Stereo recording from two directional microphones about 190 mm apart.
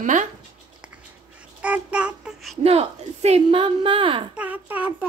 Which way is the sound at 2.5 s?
30° right (ahead or behind).